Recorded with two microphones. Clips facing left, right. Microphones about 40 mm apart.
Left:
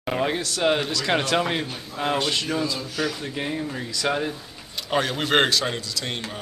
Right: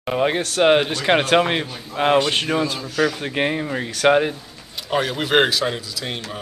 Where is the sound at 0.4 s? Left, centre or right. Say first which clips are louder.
Right 6 dB; right.